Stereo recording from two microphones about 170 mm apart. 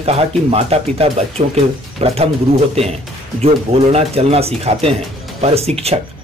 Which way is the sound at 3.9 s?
35° right (ahead or behind).